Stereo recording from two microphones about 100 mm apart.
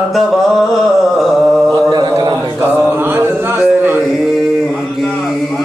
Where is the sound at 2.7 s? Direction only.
20° right (ahead or behind).